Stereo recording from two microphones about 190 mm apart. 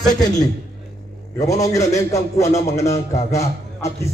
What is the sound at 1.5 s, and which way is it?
Speech, 15° left (ahead or behind).